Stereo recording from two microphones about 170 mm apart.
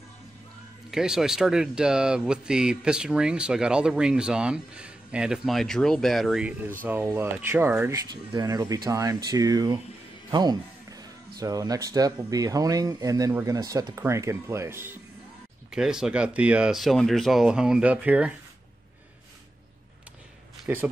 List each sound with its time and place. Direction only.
0.8 s speech: 5° right (ahead or behind)
6.8 s speech: 15° right (ahead or behind)
8.1 s speech: 25° right (ahead or behind)
15.7 s speech: 5° right (ahead or behind)
20.6 s speech: 10° right (ahead or behind)